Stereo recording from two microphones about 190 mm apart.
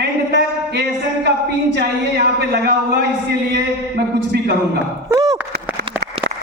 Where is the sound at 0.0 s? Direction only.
60° right (ahead or behind).